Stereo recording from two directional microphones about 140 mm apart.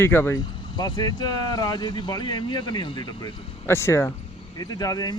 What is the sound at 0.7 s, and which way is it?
A man's voice, 30° left (ahead or behind).